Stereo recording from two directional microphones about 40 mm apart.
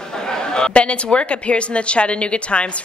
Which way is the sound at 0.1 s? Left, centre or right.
Centre.